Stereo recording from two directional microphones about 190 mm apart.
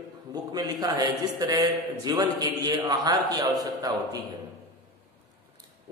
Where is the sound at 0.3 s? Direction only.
20° right (ahead or behind).